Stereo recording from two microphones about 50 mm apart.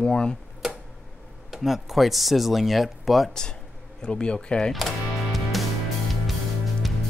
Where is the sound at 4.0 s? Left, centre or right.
Centre.